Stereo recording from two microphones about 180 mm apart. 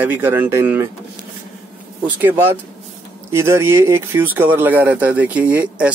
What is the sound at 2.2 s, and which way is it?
Speech, 10° right (ahead or behind).